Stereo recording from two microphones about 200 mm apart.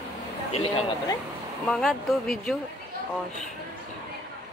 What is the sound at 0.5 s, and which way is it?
Speech, 30° left (ahead or behind).